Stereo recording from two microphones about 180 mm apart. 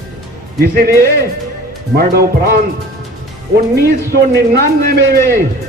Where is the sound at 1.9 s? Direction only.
60° right (ahead or behind).